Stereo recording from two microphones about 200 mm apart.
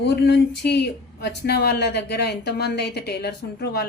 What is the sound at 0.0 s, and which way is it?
Speech, 60° left (ahead or behind).